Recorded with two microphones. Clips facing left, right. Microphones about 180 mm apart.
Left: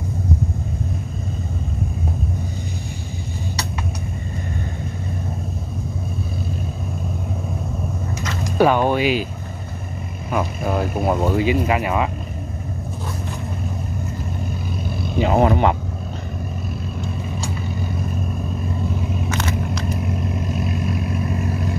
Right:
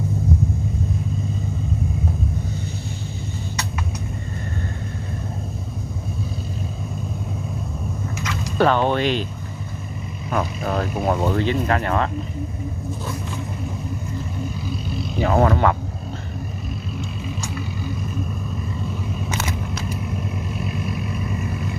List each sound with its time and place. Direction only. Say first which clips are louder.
8.5 s speech: left 2 dB; 10° left (ahead or behind)
10.3 s speech: left 1 dB; 5° left (ahead or behind)
15.1 s speech: left 2 dB; 20° left (ahead or behind)